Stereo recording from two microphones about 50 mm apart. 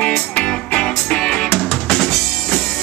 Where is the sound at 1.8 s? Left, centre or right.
Centre.